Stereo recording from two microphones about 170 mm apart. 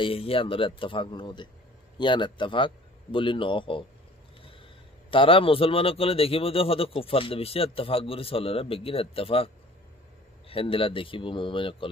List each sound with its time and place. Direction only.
0.0 s a man's voice: 35° left (ahead or behind)
5.1 s a man's voice: 30° left (ahead or behind)
10.5 s a man's voice: 30° left (ahead or behind)